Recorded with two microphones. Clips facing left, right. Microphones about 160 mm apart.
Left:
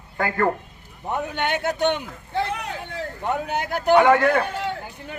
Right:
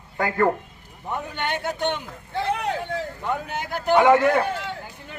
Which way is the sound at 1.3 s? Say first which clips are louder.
Left 3 dB; 65° left (ahead or behind).